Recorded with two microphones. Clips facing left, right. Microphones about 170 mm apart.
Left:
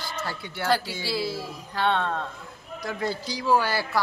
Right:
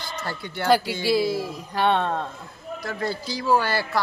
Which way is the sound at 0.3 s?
5° left (ahead or behind).